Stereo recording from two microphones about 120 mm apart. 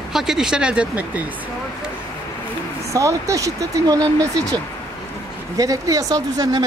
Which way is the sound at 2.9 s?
25° right (ahead or behind).